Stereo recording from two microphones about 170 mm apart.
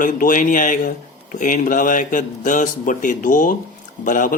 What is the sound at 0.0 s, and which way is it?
Speech, 50° left (ahead or behind).